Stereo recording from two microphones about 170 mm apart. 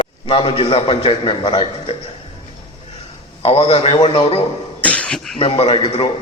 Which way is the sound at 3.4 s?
35° left (ahead or behind).